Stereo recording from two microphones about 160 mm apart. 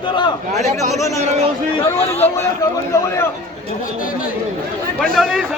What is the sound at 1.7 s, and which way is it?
Speech, 35° left (ahead or behind).